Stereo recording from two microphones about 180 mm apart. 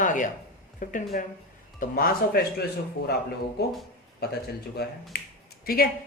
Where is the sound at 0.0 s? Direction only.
45° left (ahead or behind).